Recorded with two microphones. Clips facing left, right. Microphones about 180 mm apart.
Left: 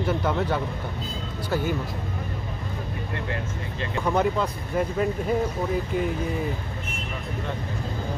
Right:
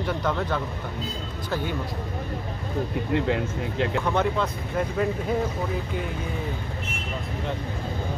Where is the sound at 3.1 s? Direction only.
90° right.